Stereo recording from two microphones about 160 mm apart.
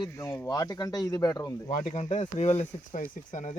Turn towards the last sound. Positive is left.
turn(degrees=50)  # may be behind; listen again after turning